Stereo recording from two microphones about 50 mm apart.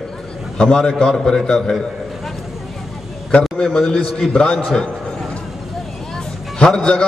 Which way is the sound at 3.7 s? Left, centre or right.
Centre.